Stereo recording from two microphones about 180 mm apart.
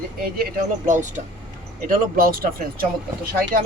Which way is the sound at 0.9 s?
45° right (ahead or behind).